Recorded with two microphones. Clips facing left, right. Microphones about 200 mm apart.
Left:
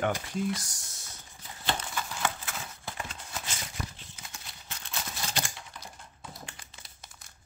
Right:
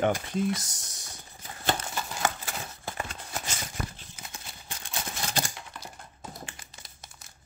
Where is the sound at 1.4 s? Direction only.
45° right (ahead or behind).